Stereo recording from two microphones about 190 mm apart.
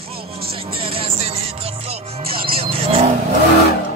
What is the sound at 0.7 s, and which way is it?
Music, 30° right (ahead or behind).